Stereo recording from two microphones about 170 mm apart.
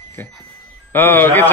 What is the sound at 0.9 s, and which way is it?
Speech, 10° left (ahead or behind).